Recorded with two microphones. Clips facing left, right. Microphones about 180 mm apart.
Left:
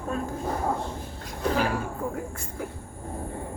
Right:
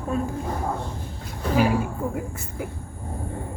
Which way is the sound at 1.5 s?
10° right (ahead or behind).